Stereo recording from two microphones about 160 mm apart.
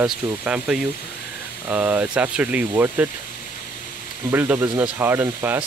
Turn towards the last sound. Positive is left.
turn(degrees=-10)  # may be behind; listen again after turning